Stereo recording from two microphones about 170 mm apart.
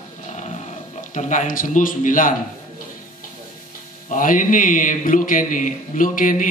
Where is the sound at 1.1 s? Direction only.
45° left (ahead or behind).